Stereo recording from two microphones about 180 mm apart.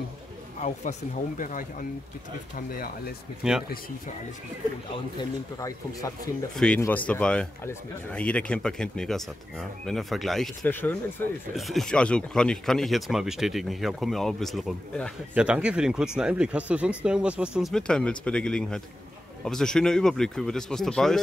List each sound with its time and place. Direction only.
0.6 s speech: 40° left (ahead or behind)
3.4 s speech: 5° right (ahead or behind)
5.6 s speech: 20° left (ahead or behind)
6.5 s speech: 5° left (ahead or behind)
11.5 s speech: centre (ahead or behind)